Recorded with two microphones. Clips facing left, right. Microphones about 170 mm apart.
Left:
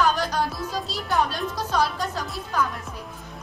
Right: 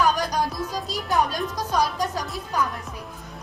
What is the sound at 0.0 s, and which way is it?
Music, 15° right (ahead or behind).